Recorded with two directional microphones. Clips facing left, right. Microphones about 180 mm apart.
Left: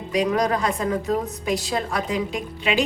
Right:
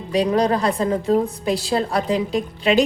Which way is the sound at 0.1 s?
30° right (ahead or behind).